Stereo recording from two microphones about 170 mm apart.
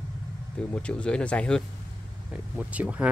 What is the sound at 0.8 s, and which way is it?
Speech, 5° left (ahead or behind).